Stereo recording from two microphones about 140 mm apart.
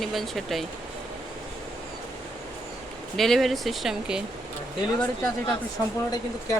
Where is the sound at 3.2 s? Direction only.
Centre (ahead or behind).